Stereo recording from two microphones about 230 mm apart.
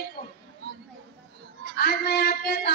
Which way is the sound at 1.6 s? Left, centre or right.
Left.